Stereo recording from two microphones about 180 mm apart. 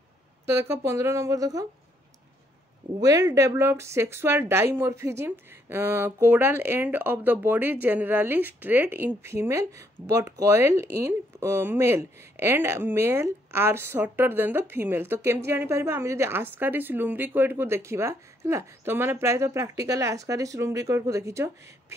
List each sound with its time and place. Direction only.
0.5 s a woman's voice: 15° right (ahead or behind)
3.0 s a woman's voice: 20° right (ahead or behind)